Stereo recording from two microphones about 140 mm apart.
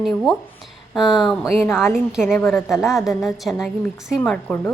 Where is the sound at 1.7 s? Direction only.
5° right (ahead or behind).